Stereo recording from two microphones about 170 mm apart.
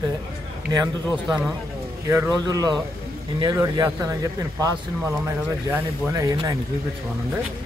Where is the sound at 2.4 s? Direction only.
25° right (ahead or behind).